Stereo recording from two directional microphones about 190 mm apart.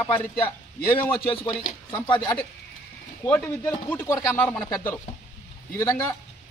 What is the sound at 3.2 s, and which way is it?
Speech, 10° left (ahead or behind).